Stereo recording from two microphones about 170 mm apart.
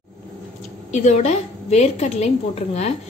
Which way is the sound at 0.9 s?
40° left (ahead or behind).